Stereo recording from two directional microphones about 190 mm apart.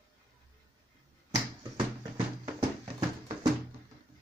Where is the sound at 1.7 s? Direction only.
20° right (ahead or behind).